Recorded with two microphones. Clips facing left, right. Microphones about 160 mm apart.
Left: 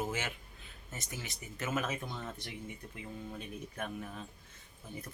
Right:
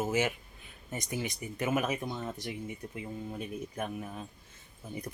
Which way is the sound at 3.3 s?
10° right (ahead or behind).